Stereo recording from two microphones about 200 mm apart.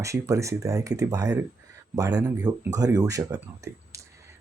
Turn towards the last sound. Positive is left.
turn(degrees=-15)  # may be behind; listen again after turning